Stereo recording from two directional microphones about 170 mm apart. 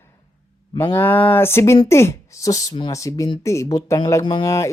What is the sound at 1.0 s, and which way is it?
Speech, 10° left (ahead or behind).